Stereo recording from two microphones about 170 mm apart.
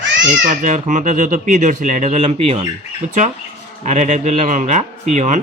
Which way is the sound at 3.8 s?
45° right (ahead or behind).